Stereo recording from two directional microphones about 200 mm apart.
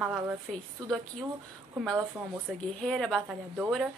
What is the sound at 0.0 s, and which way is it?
Speech, 5° right (ahead or behind).